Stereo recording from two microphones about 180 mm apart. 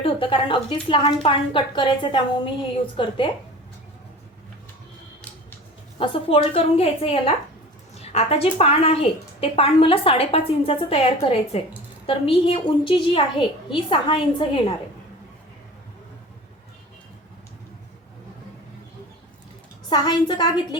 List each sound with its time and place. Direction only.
0.0 s a woman's voice: 30° left (ahead or behind)
6.0 s a woman's voice: 30° left (ahead or behind)
19.9 s a woman's voice: 25° left (ahead or behind)